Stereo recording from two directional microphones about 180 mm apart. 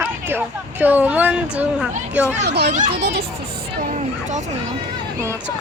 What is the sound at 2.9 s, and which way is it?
Speech, 60° right (ahead or behind).